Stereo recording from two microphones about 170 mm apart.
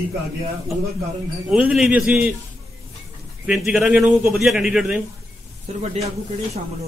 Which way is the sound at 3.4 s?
5° right (ahead or behind).